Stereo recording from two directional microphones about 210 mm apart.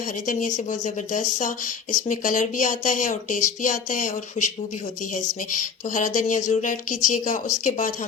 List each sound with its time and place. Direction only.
0.3 s speech: 35° left (ahead or behind)